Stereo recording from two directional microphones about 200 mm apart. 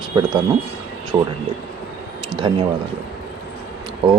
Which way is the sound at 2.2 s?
25° right (ahead or behind).